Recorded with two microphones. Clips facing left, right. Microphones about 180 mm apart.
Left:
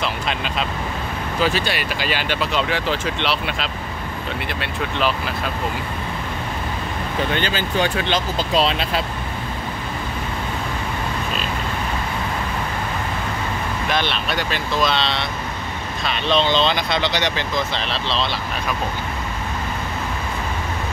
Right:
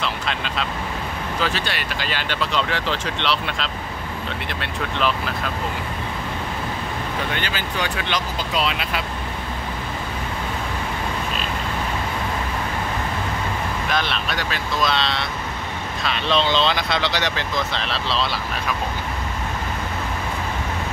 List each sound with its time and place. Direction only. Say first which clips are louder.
0.0 s speech: left 2 dB; 15° left (ahead or behind)
7.3 s speech: left 5 dB; 30° left (ahead or behind)
13.9 s speech: left 2 dB; centre (ahead or behind)